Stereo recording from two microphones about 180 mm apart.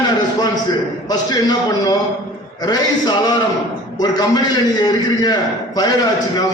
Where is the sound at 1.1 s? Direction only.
20° left (ahead or behind).